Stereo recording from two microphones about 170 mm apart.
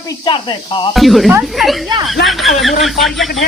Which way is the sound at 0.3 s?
30° left (ahead or behind).